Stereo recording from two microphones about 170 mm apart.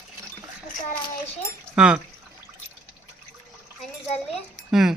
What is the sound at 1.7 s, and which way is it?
Speech, 5° right (ahead or behind).